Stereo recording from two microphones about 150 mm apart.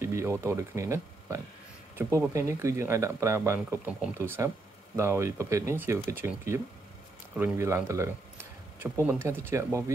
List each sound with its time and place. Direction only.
0.0 s speech: 20° right (ahead or behind)